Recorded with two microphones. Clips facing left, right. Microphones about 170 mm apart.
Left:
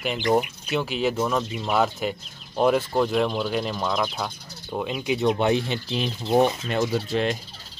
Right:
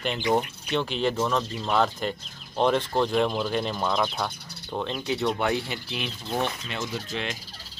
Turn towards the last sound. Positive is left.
turn(degrees=40)  # may be behind; listen again after turning